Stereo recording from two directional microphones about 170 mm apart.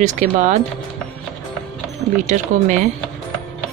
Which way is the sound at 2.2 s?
45° right (ahead or behind).